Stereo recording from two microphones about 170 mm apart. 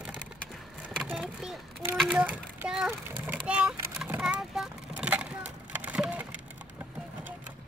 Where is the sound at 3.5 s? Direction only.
10° right (ahead or behind).